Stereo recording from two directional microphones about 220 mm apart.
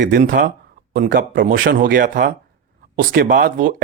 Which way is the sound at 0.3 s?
35° right (ahead or behind).